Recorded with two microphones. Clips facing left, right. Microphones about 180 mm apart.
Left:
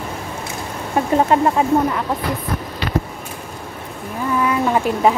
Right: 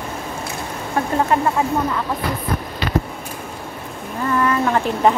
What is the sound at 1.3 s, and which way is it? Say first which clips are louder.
Speech: left 2 dB; 20° left (ahead or behind).